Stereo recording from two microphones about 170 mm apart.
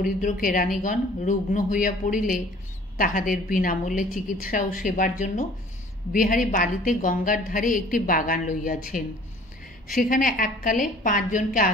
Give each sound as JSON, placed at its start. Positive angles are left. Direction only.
{"t": 0.0, "sound": "a woman's voice", "side_deg": 55}